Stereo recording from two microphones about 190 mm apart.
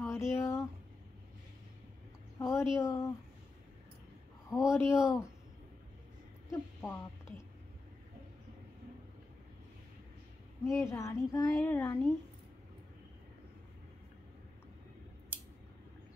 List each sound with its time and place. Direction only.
0.0 s speech: 15° left (ahead or behind)
2.3 s a woman's voice: 15° left (ahead or behind)
4.5 s a woman's voice: 15° left (ahead or behind)
6.5 s speech: 15° left (ahead or behind)
10.6 s a woman's voice: 15° left (ahead or behind)